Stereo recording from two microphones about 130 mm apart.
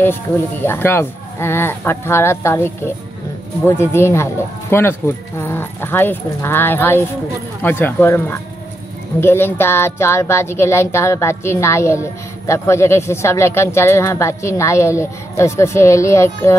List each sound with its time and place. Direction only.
0.0 s speech: 15° left (ahead or behind)